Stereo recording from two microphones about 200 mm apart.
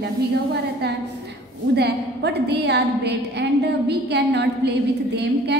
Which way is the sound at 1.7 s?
55° right (ahead or behind).